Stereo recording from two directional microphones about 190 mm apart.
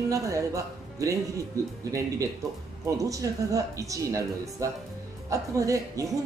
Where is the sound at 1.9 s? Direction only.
15° right (ahead or behind).